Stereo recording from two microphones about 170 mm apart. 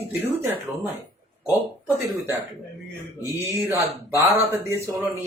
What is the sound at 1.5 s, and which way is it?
Speech, 10° right (ahead or behind).